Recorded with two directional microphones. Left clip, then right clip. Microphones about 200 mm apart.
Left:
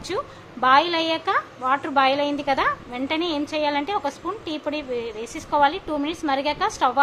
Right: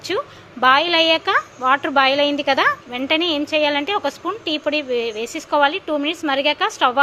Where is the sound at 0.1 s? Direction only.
15° right (ahead or behind).